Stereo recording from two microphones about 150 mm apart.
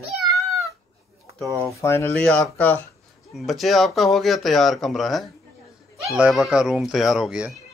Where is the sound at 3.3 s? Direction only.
Centre (ahead or behind).